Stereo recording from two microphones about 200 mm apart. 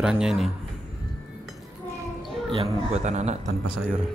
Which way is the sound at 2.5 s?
30° right (ahead or behind).